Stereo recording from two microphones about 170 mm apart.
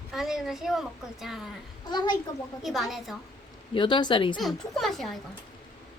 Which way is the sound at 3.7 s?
25° left (ahead or behind).